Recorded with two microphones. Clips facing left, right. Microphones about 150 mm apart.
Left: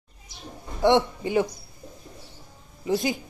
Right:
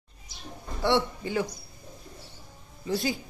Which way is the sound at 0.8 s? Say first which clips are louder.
Left 5 dB; 20° left (ahead or behind).